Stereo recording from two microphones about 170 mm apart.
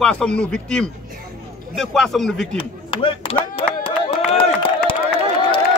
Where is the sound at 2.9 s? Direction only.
30° left (ahead or behind).